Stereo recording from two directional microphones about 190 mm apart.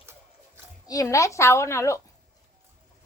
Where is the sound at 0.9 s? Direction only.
15° left (ahead or behind).